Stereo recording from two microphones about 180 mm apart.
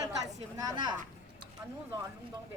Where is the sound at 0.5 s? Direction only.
20° right (ahead or behind).